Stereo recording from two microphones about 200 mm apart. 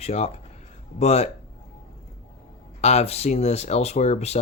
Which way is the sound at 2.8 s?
30° left (ahead or behind).